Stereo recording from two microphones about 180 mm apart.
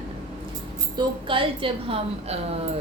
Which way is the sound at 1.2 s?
30° right (ahead or behind).